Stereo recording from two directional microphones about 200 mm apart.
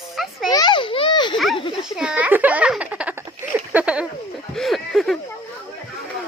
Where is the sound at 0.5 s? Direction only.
20° left (ahead or behind).